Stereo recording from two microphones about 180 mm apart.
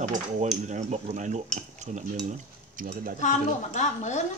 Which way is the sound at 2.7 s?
50° right (ahead or behind).